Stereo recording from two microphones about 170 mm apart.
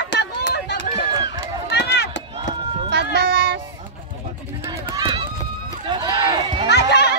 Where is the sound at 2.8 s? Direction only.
70° right (ahead or behind).